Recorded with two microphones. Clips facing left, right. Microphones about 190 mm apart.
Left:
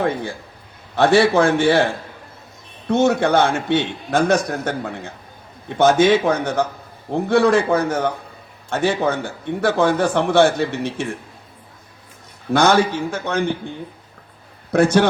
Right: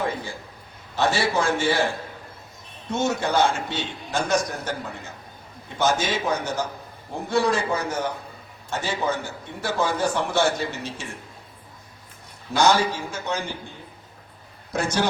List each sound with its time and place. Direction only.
0.0 s a man's voice: 60° left (ahead or behind)
2.9 s a man's voice: 60° left (ahead or behind)
12.5 s a man's voice: 60° left (ahead or behind)
14.7 s a man's voice: 60° left (ahead or behind)